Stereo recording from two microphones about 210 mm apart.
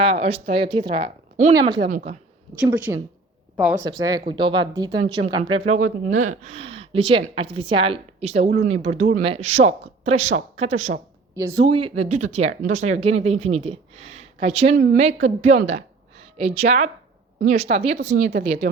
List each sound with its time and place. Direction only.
0.0 s a woman's voice: 25° right (ahead or behind)
1.9 s a woman's voice: 40° right (ahead or behind)
2.7 s speech: 10° right (ahead or behind)
3.8 s a woman's voice: 20° right (ahead or behind)
11.3 s speech: 15° right (ahead or behind)
11.6 s a woman's voice: 25° right (ahead or behind)
18.1 s speech: 50° right (ahead or behind)